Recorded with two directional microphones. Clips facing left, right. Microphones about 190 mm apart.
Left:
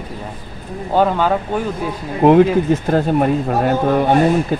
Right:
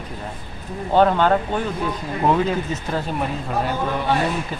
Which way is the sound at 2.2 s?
55° left (ahead or behind).